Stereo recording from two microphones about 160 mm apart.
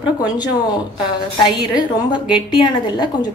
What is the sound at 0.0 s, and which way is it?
A woman's voice, 25° left (ahead or behind).